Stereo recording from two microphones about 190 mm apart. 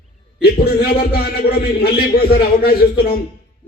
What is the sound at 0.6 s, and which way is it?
A man's voice, 55° left (ahead or behind).